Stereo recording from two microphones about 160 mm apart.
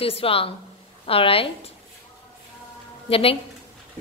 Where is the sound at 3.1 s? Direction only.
35° left (ahead or behind).